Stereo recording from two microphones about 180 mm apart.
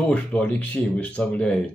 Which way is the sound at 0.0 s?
5° left (ahead or behind).